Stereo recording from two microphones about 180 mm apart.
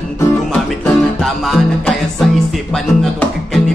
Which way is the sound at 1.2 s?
Centre (ahead or behind).